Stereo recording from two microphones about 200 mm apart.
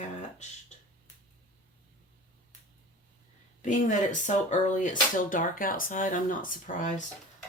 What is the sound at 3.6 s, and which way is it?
Speech, 40° left (ahead or behind).